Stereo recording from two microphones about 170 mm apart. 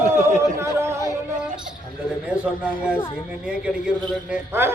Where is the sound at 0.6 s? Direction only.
15° right (ahead or behind).